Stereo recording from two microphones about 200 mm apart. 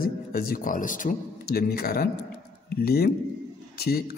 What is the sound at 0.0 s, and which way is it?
A man's voice, 50° left (ahead or behind).